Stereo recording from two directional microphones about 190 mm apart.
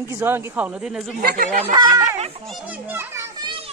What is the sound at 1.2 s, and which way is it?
Speech, 50° right (ahead or behind).